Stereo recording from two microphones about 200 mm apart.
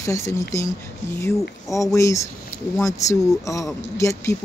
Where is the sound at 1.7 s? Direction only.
15° left (ahead or behind).